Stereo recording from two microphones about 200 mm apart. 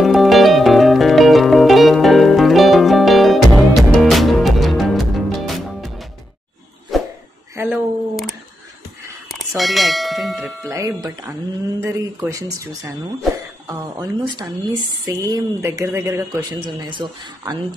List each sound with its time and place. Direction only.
0.0 s music: centre (ahead or behind)
6.9 s a sound: centre (ahead or behind)
7.5 s a sound: 10° right (ahead or behind)
9.6 s bell: centre (ahead or behind)
10.7 s music: 15° right (ahead or behind)
11.8 s speech: 15° right (ahead or behind)